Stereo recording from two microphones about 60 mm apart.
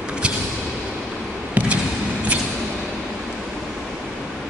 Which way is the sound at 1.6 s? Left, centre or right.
Right.